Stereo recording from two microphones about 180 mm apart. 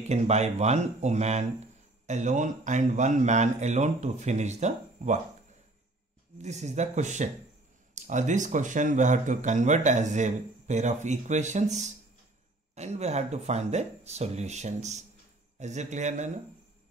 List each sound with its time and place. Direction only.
0.0 s speech: 40° right (ahead or behind)
6.3 s speech: 40° right (ahead or behind)